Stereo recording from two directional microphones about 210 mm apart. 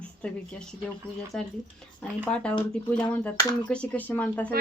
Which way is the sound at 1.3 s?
Centre (ahead or behind).